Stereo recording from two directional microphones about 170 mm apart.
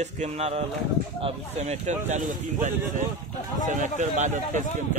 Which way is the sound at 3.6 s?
45° right (ahead or behind).